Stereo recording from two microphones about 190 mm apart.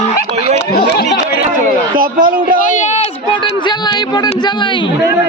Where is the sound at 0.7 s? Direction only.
55° left (ahead or behind).